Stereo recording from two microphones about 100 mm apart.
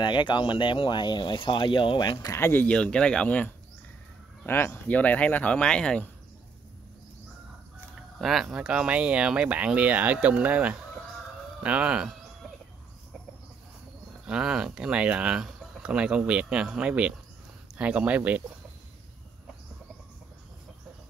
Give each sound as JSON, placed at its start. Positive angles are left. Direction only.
{"t": 0.0, "sound": "speech", "side_deg": 50}
{"t": 2.3, "sound": "speech", "side_deg": 25}
{"t": 2.7, "sound": "speech", "side_deg": 10}
{"t": 8.2, "sound": "speech", "side_deg": 0}
{"t": 14.2, "sound": "speech", "side_deg": -5}